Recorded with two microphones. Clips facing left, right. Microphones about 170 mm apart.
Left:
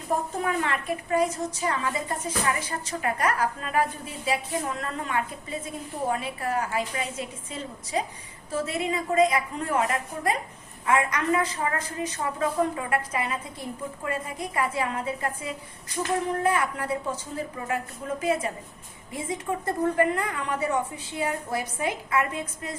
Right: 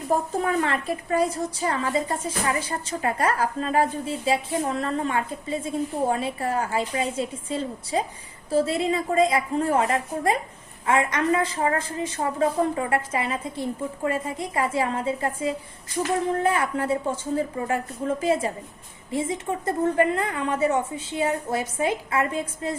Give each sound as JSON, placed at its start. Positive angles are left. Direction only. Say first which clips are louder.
{"t": 0.4, "sound": "a woman's voice", "louder": "right 3 dB", "side_deg": -30}